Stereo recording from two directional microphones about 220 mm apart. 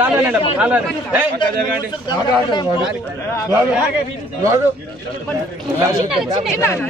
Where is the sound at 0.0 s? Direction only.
10° right (ahead or behind).